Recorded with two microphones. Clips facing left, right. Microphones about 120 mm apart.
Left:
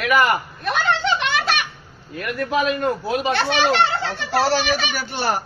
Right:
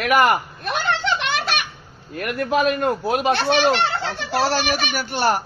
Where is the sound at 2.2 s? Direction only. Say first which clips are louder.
Right 1 dB; 55° right (ahead or behind).